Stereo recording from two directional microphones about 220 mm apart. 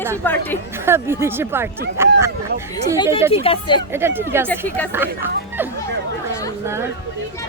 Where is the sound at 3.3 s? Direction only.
25° left (ahead or behind).